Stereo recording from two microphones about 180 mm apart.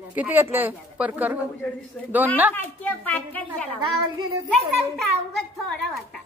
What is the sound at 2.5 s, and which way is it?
A woman's voice, 10° left (ahead or behind).